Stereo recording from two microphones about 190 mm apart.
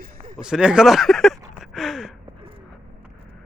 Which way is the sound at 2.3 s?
30° right (ahead or behind).